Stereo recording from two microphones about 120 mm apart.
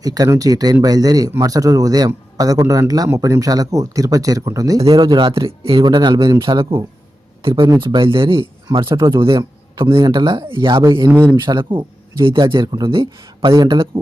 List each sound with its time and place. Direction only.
0.0 s a man's voice: 30° right (ahead or behind)
9.4 s a sound: 30° right (ahead or behind)
10.0 s speech: 40° right (ahead or behind)
11.1 s a man's voice: 20° right (ahead or behind)
11.4 s speech: 40° right (ahead or behind)
13.9 s speech: 50° right (ahead or behind)